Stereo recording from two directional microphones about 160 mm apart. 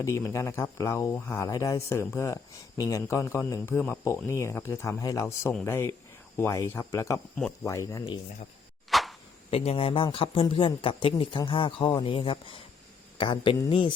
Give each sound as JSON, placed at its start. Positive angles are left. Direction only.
{"t": 0.0, "sound": "speech", "side_deg": 20}
{"t": 3.8, "sound": "speech", "side_deg": 10}
{"t": 8.9, "sound": "a sound", "side_deg": 0}
{"t": 9.5, "sound": "speech", "side_deg": 40}